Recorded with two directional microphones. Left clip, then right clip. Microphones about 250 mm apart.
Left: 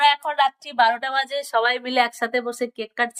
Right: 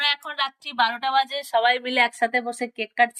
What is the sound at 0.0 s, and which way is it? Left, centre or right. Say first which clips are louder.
Speech: left 6 dB; left.